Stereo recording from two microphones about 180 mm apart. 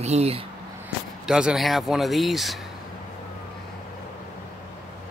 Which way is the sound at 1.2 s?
5° right (ahead or behind).